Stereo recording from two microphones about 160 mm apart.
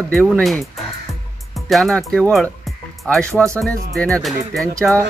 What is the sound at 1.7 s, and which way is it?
Speech, centre (ahead or behind).